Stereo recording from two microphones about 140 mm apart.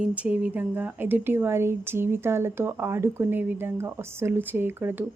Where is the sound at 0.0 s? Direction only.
10° right (ahead or behind).